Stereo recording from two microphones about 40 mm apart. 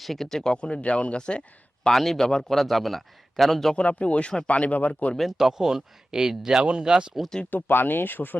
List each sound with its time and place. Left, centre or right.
0.0 s speech: centre
0.5 s speech: left
1.9 s speech: centre
3.8 s speech: left
5.4 s speech: centre
7.5 s speech: left